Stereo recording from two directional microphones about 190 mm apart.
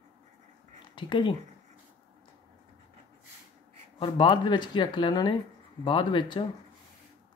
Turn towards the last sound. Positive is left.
turn(degrees=25)  # may be behind; listen again after turning